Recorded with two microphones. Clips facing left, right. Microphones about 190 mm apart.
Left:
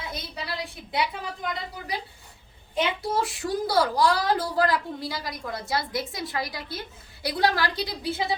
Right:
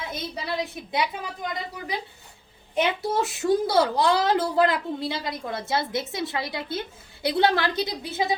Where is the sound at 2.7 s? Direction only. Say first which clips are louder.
Right 2 dB; 25° right (ahead or behind).